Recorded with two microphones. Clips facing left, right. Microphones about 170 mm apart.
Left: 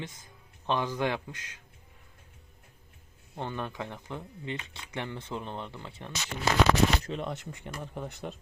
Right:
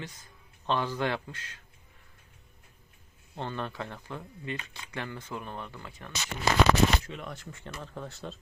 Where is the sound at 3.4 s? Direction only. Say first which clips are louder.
Even; 15° left (ahead or behind); by 7.3 s 30° left (ahead or behind).